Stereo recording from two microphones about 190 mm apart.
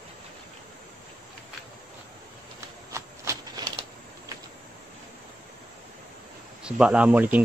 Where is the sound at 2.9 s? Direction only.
15° right (ahead or behind).